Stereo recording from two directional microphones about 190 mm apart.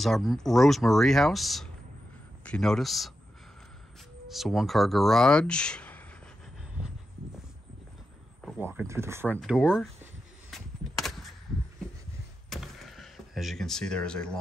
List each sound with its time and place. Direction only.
0.0 s speech: centre (ahead or behind)
4.3 s speech: centre (ahead or behind)
8.5 s speech: 10° right (ahead or behind)
10.5 s a sound: centre (ahead or behind)
12.4 s power windows: centre (ahead or behind)